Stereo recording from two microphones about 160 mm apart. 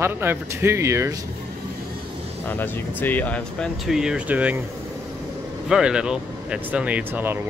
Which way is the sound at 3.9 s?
5° right (ahead or behind).